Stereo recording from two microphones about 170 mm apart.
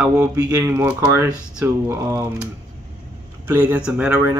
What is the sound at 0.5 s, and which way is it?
Speech, 10° right (ahead or behind).